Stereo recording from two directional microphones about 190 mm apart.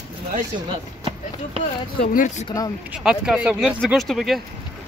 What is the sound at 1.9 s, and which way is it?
Speech, 45° left (ahead or behind).